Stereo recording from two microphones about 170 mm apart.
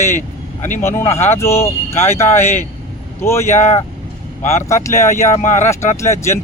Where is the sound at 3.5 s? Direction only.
45° left (ahead or behind).